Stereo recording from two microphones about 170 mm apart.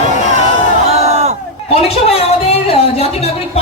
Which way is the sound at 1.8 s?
35° left (ahead or behind).